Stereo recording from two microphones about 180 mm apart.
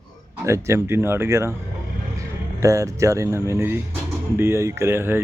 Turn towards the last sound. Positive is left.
turn(degrees=-15)  # may be behind; listen again after turning